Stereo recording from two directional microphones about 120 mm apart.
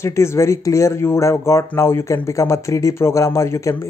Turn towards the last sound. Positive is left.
turn(degrees=25)  # may be behind; listen again after turning